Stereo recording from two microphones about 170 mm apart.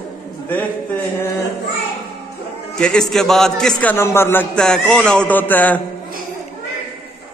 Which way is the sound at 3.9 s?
15° left (ahead or behind).